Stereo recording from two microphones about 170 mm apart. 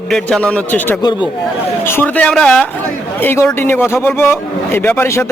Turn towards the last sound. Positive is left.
turn(degrees=15)  # may be behind; listen again after turning